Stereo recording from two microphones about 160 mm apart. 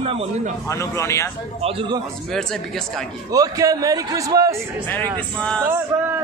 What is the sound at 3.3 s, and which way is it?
A man's voice, 20° right (ahead or behind).